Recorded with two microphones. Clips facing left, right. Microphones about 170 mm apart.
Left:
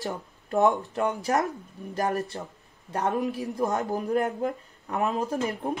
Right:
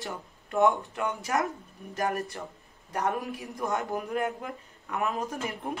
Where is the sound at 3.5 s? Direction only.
35° left (ahead or behind).